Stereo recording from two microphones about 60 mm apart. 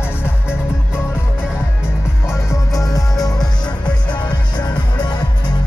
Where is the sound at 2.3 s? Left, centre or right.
Left.